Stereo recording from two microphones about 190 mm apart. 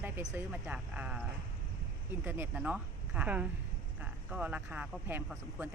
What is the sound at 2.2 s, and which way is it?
Speech, 10° right (ahead or behind).